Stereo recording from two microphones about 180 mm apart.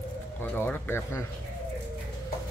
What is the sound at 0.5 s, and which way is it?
Speech, 10° left (ahead or behind).